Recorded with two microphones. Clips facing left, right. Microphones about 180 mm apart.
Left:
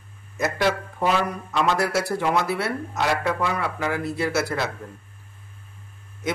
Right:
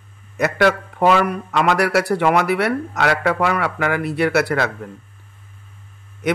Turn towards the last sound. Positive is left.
turn(degrees=-70)  # may be behind; listen again after turning